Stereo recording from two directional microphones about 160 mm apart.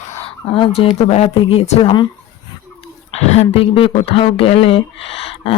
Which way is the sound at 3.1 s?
40° left (ahead or behind).